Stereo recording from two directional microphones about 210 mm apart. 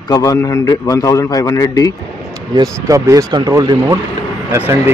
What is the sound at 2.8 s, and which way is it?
Speech, 15° right (ahead or behind).